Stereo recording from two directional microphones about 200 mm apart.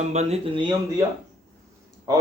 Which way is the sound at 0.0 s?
35° right (ahead or behind).